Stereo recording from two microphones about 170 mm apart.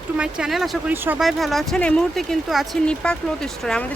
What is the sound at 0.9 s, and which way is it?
Speech, 15° right (ahead or behind).